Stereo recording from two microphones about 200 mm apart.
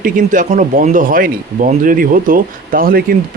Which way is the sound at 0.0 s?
40° right (ahead or behind).